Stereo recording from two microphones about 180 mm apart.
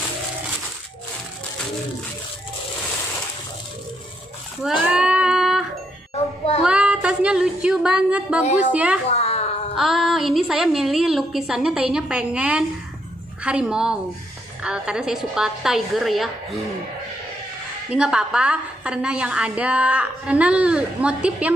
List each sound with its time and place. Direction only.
4.6 s a sound: 5° right (ahead or behind)
6.6 s female singing: 5° right (ahead or behind)
8.7 s a woman's voice: 5° right (ahead or behind)
9.1 s a sound: 35° left (ahead or behind)
9.8 s a woman's voice: centre (ahead or behind)
17.8 s a woman's voice: 5° right (ahead or behind)